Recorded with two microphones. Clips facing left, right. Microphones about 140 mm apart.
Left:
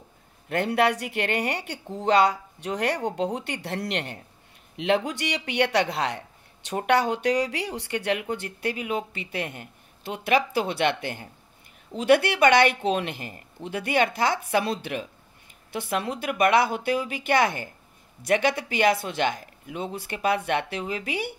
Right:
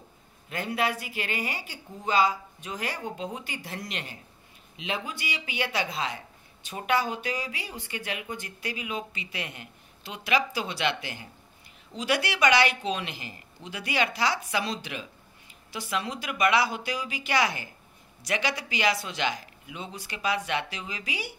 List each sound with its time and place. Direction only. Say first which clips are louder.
0.5 s speech: left 6 dB; 65° left (ahead or behind)